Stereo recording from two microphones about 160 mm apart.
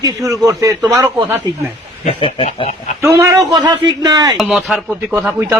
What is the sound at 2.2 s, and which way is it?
Snicker, 35° left (ahead or behind).